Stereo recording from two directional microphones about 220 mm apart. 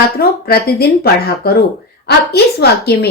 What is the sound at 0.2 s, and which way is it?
Speech, 45° left (ahead or behind).